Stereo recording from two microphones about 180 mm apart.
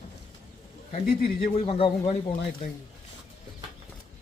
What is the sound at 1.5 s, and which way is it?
Speech, 30° left (ahead or behind).